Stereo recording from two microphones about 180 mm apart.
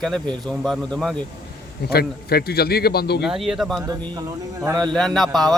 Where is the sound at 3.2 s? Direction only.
Centre (ahead or behind).